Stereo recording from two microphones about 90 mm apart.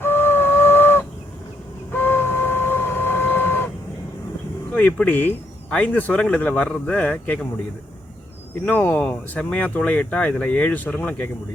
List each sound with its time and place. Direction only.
0.0 s a sound: 25° left (ahead or behind)
1.9 s printer: 25° left (ahead or behind)
4.7 s speech: 15° left (ahead or behind)
8.6 s speech: 20° left (ahead or behind)